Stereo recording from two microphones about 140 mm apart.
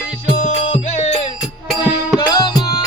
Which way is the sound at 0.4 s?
60° left (ahead or behind).